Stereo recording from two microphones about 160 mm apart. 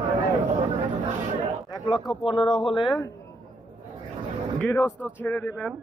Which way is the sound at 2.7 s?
Centre (ahead or behind).